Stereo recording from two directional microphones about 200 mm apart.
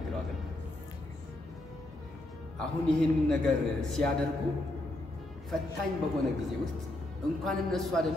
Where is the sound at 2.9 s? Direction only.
Centre (ahead or behind).